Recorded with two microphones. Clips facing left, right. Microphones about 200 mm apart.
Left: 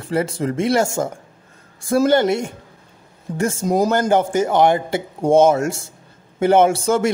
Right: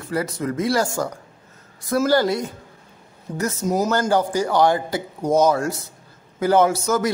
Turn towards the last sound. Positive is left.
turn(degrees=30)  # may be behind; listen again after turning